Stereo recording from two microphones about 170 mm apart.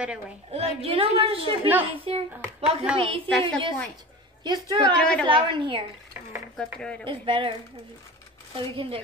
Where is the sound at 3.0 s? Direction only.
35° right (ahead or behind).